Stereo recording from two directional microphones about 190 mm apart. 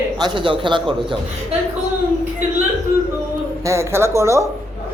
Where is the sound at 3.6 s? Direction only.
15° right (ahead or behind).